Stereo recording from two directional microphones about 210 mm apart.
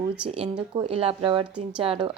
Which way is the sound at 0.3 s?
25° right (ahead or behind).